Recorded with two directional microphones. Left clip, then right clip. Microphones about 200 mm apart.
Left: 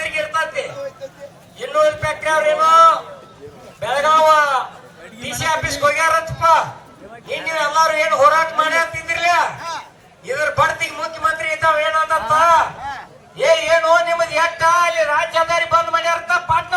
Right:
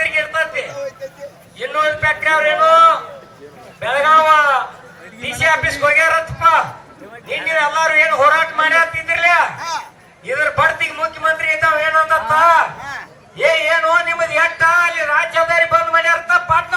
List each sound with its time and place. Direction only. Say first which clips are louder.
1.5 s a man's voice: left 1 dB; 30° right (ahead or behind)
3.8 s a sound: right 2 dB; 30° right (ahead or behind)
5.4 s music: right 3 dB; 30° right (ahead or behind)
7.3 s a man's voice: right 4 dB; 30° right (ahead or behind); by 16.7 s 50° right (ahead or behind)